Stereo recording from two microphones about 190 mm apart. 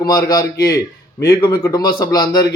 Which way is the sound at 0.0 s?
20° left (ahead or behind).